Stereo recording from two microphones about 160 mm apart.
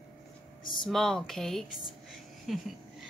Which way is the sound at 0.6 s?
30° left (ahead or behind).